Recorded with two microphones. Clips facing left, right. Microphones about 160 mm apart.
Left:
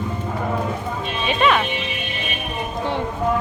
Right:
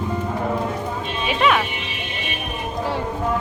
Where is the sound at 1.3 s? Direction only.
5° right (ahead or behind).